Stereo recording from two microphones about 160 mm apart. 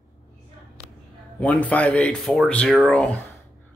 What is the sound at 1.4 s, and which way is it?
Speech, 10° left (ahead or behind).